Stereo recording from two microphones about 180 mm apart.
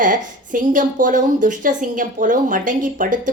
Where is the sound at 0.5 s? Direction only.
45° right (ahead or behind).